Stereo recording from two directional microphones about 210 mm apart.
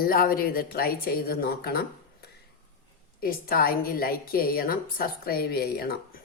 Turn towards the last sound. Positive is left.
turn(degrees=45)  # may be behind; listen again after turning